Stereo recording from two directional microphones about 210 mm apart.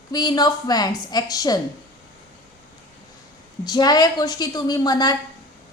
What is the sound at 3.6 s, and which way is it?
A woman's voice, 20° left (ahead or behind).